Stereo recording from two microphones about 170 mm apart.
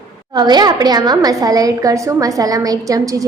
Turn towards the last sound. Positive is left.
turn(degrees=-20)  # may be behind; listen again after turning